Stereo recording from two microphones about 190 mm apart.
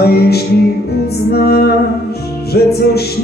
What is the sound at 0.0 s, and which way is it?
Music, 55° left (ahead or behind).